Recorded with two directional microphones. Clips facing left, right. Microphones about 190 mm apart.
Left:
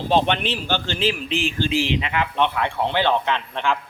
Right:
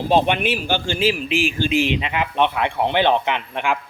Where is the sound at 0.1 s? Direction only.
10° right (ahead or behind).